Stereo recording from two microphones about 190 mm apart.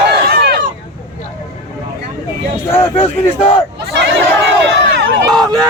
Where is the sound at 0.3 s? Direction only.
50° right (ahead or behind).